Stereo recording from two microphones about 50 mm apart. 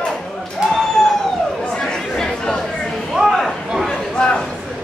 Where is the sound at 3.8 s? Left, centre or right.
Centre.